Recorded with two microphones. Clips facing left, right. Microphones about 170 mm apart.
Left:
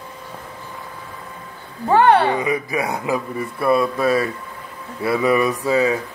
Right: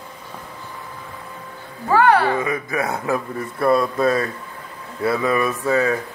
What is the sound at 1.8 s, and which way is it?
Speech, 25° left (ahead or behind).